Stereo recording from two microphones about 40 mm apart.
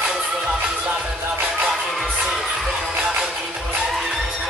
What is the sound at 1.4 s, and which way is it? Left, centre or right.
Music, centre.